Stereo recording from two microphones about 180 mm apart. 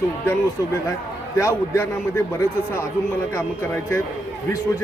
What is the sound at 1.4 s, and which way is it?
Speech, 15° left (ahead or behind).